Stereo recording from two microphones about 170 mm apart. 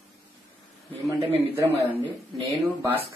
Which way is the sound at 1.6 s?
15° right (ahead or behind).